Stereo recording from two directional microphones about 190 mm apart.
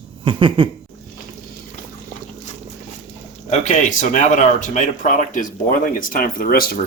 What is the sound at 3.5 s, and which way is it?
Speech, 40° left (ahead or behind).